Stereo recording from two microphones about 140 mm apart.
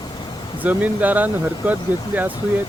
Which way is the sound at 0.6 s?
10° right (ahead or behind).